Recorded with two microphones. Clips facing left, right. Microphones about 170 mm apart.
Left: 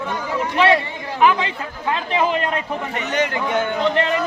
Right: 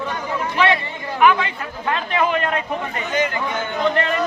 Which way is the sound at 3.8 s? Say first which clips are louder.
Right 2 dB; 20° left (ahead or behind).